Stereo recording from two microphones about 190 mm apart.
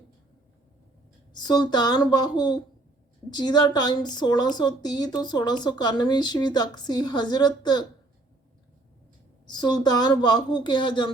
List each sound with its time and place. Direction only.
1.3 s a woman's voice: 20° left (ahead or behind)
9.5 s a woman's voice: 20° left (ahead or behind)